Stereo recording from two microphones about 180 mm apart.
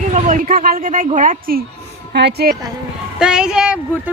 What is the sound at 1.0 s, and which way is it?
Speech, 45° right (ahead or behind).